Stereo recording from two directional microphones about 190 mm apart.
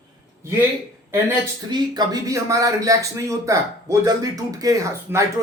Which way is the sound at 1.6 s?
20° right (ahead or behind).